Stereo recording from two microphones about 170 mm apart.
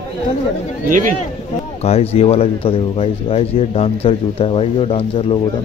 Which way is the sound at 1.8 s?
35° left (ahead or behind).